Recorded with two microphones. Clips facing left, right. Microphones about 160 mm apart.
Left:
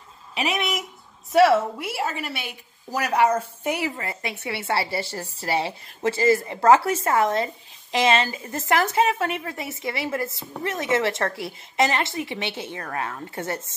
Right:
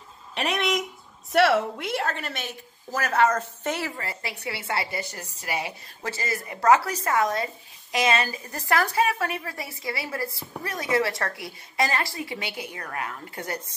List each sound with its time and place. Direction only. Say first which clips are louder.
0.3 s a sound: even; centre (ahead or behind)
1.3 s a woman's voice: left 3 dB; centre (ahead or behind)
3.9 s a woman's voice: left 3 dB; 25° left (ahead or behind)